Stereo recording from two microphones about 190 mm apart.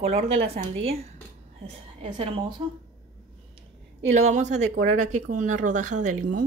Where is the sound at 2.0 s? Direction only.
25° right (ahead or behind).